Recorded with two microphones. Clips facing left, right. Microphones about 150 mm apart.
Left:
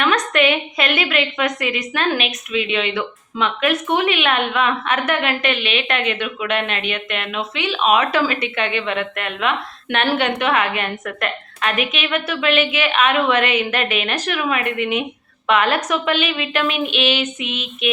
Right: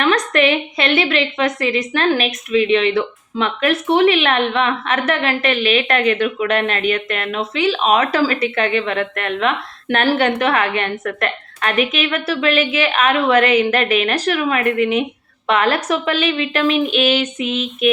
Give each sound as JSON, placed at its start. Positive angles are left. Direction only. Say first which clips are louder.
{"t": 0.0, "sound": "a woman's voice", "louder": "right 2 dB", "side_deg": -35}